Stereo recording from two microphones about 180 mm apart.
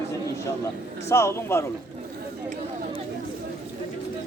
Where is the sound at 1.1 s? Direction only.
15° left (ahead or behind).